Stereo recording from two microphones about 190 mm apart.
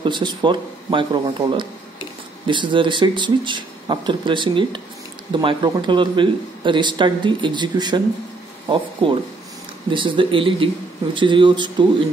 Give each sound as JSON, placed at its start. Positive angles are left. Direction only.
{"t": 0.0, "sound": "a man's voice", "side_deg": -25}